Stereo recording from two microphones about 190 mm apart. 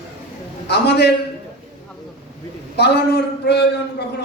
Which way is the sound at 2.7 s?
60° left (ahead or behind).